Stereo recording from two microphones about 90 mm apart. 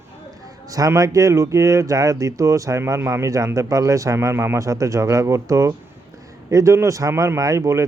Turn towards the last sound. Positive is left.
turn(degrees=-35)  # may be behind; listen again after turning